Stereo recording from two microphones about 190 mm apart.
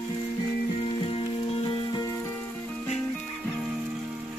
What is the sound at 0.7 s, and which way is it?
Music, 30° left (ahead or behind).